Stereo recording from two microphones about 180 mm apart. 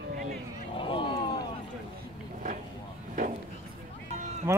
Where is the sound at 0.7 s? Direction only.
25° left (ahead or behind).